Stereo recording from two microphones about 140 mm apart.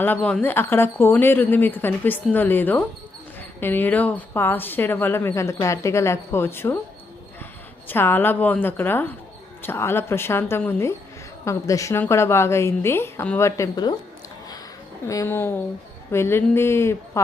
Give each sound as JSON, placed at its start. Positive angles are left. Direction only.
{"t": 0.0, "sound": "speech", "side_deg": 10}
{"t": 7.9, "sound": "a woman's voice", "side_deg": 15}
{"t": 15.0, "sound": "speech", "side_deg": 20}